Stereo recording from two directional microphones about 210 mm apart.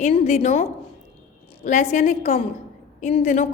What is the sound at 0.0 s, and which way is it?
A woman's voice, 30° left (ahead or behind).